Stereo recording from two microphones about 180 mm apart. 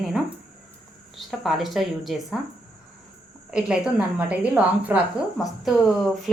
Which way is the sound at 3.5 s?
5° right (ahead or behind).